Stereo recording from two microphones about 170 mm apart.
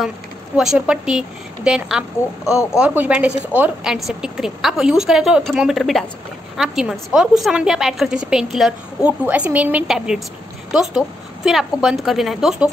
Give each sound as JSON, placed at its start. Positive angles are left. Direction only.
{"t": 0.6, "sound": "a woman's voice", "side_deg": -5}